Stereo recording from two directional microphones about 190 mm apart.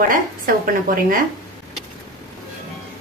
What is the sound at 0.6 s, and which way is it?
Speech, 45° right (ahead or behind).